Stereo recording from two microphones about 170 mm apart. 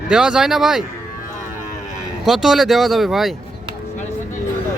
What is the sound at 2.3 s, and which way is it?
Speech, centre (ahead or behind).